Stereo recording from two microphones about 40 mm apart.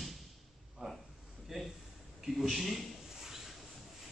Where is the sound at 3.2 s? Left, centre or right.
Centre.